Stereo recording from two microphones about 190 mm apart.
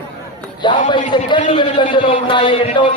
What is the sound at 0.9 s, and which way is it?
Speech, 25° left (ahead or behind).